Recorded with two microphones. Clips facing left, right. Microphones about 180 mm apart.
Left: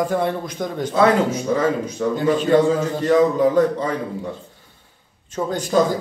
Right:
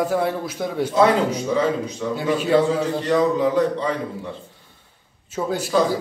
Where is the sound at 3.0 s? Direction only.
45° left (ahead or behind).